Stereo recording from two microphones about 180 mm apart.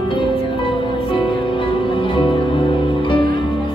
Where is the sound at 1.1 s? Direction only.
30° left (ahead or behind).